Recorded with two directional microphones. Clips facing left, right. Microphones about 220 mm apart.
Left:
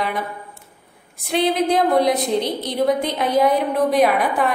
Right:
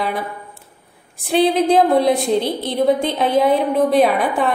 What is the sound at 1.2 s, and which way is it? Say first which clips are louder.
A woman's voice: right 4 dB; 30° right (ahead or behind).